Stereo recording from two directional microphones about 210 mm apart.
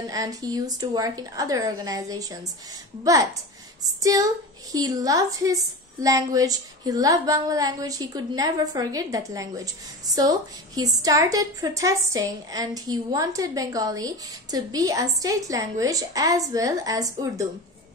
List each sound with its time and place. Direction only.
0.1 s a woman's voice: 15° right (ahead or behind)